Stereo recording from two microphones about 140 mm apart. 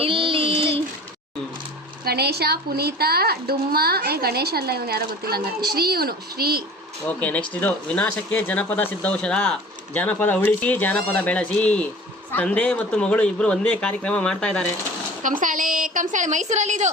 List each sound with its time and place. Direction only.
0.0 s child singing: 40° right (ahead or behind)
3.1 s a woman's voice: 90° right
7.1 s speech: 10° left (ahead or behind)
15.2 s a woman's voice: 70° right (ahead or behind)